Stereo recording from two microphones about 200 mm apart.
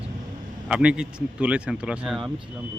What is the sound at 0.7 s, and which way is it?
Speech, 5° right (ahead or behind).